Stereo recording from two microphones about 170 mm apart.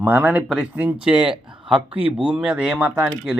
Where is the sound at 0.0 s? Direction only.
10° right (ahead or behind).